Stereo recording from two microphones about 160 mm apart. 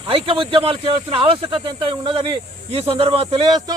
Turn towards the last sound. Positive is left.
turn(degrees=-40)  # may be behind; listen again after turning